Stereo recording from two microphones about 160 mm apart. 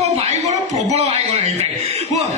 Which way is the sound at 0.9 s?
45° right (ahead or behind).